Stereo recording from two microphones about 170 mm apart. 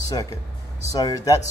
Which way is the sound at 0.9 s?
20° left (ahead or behind).